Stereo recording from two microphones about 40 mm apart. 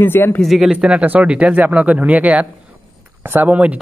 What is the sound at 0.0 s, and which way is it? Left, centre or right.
Speech, left.